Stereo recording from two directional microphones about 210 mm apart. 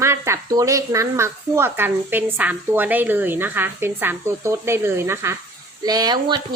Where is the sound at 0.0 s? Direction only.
10° right (ahead or behind).